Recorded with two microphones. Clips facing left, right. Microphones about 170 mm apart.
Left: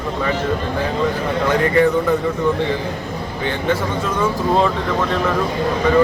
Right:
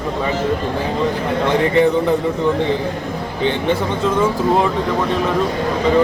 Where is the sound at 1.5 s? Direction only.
20° right (ahead or behind).